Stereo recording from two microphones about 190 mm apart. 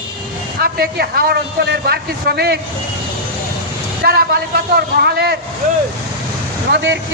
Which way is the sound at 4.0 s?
55° right (ahead or behind).